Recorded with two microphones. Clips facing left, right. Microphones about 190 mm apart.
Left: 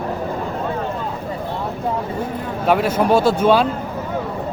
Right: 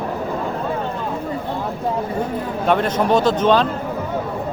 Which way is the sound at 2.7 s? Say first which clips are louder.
Left 1 dB; 5° left (ahead or behind).